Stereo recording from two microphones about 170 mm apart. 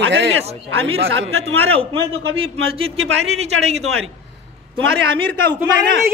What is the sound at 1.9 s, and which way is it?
A man's voice, 35° right (ahead or behind).